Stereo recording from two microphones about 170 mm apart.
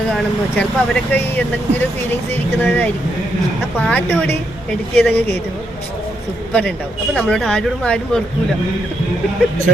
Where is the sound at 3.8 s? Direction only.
10° left (ahead or behind).